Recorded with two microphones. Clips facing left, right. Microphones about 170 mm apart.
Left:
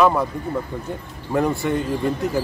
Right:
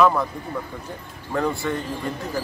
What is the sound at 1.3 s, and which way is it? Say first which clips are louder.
Speech: left 4 dB; 20° left (ahead or behind).